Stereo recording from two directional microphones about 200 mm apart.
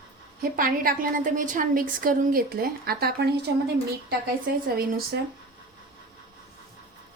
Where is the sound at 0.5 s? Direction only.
45° right (ahead or behind).